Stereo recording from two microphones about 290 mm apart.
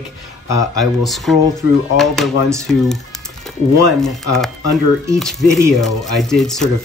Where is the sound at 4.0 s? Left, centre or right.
Centre.